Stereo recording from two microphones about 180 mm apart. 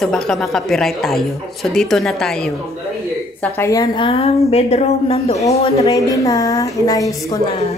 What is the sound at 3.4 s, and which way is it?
A woman's voice, 15° left (ahead or behind).